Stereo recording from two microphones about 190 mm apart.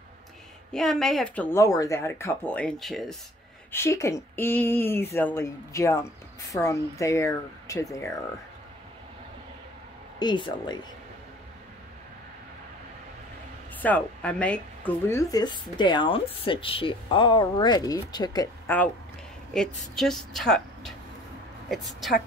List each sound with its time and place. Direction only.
0.7 s speech: centre (ahead or behind)
3.7 s speech: 15° left (ahead or behind)
10.1 s speech: 25° left (ahead or behind)
13.7 s speech: 10° left (ahead or behind)
19.8 s a woman's voice: centre (ahead or behind)